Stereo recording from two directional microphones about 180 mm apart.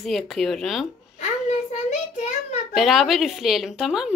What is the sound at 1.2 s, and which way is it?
Child singing, 40° left (ahead or behind).